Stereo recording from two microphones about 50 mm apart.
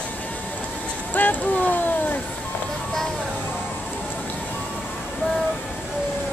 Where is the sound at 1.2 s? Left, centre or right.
Left.